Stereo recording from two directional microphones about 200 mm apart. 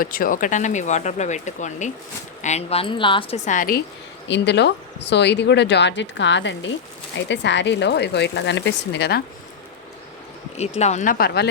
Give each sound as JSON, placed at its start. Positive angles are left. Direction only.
{"t": 0.0, "sound": "speech", "side_deg": 45}
{"t": 4.3, "sound": "speech", "side_deg": 60}
{"t": 10.6, "sound": "speech", "side_deg": 35}